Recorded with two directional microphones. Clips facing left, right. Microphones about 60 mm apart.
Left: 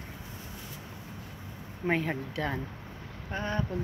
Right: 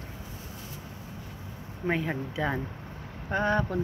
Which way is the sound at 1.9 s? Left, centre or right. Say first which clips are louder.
Even; centre.